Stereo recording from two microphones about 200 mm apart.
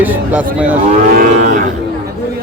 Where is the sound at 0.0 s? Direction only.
10° right (ahead or behind).